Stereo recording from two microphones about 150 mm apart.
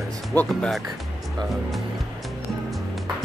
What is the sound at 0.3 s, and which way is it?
Speech, 10° left (ahead or behind).